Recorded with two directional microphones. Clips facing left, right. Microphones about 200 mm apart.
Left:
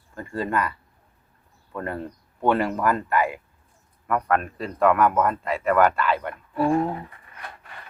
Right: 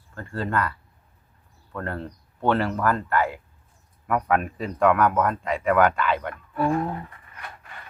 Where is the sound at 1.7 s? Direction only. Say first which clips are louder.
Left 1 dB; 10° left (ahead or behind).